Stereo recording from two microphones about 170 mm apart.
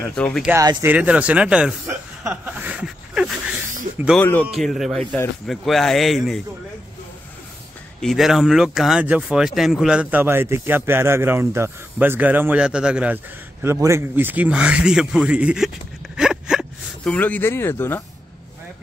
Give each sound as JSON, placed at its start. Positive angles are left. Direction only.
{"t": 0.0, "sound": "speech", "side_deg": 5}
{"t": 0.6, "sound": "speech", "side_deg": -25}
{"t": 0.8, "sound": "speech", "side_deg": -5}
{"t": 4.2, "sound": "speech", "side_deg": 10}
{"t": 4.5, "sound": "speech", "side_deg": 0}
{"t": 8.0, "sound": "speech", "side_deg": 0}
{"t": 16.2, "sound": "gasp", "side_deg": -5}
{"t": 17.1, "sound": "speech", "side_deg": 10}